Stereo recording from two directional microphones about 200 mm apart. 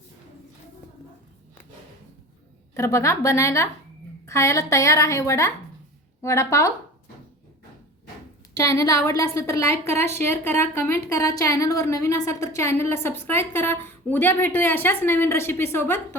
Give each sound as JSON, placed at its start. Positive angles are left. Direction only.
{"t": 2.7, "sound": "a woman's voice", "side_deg": 15}
{"t": 8.5, "sound": "a woman's voice", "side_deg": 15}